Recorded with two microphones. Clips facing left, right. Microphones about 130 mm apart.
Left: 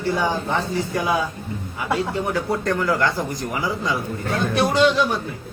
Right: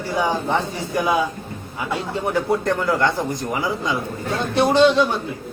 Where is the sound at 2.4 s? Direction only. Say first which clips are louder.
Right 1 dB; 20° right (ahead or behind).